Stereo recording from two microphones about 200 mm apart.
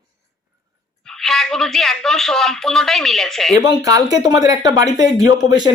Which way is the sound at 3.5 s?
20° right (ahead or behind).